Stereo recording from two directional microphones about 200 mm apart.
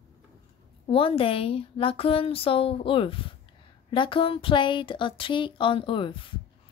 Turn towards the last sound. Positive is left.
turn(degrees=25)  # may be behind; listen again after turning